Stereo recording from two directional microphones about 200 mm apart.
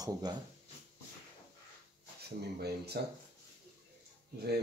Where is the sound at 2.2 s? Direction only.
55° right (ahead or behind).